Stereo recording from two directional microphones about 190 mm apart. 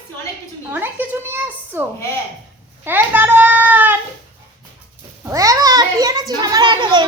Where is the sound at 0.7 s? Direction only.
10° right (ahead or behind).